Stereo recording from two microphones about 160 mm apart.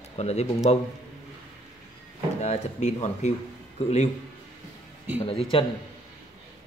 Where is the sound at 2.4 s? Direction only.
45° left (ahead or behind).